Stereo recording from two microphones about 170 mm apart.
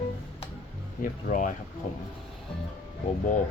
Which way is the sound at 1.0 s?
50° left (ahead or behind).